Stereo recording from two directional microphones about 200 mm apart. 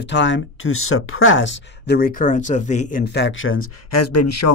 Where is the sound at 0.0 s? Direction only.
65° left (ahead or behind); by 3.7 s 90° left.